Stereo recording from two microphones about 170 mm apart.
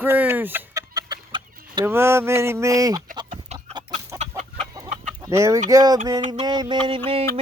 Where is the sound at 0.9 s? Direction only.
25° right (ahead or behind).